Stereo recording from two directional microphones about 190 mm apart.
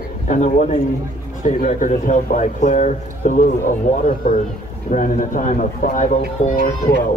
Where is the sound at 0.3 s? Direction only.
40° left (ahead or behind).